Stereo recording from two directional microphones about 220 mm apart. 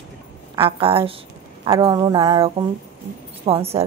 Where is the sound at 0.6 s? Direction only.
25° right (ahead or behind).